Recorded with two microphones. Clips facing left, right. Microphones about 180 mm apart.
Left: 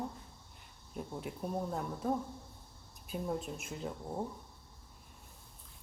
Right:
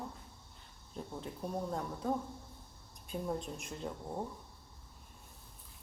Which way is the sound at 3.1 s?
5° left (ahead or behind).